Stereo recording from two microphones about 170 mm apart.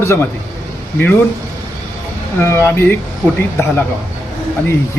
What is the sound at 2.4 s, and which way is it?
Speech, 15° left (ahead or behind).